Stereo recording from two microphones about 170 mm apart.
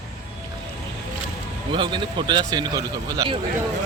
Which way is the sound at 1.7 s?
30° right (ahead or behind).